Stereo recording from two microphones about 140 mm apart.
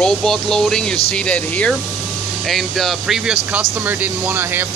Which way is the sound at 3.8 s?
15° right (ahead or behind).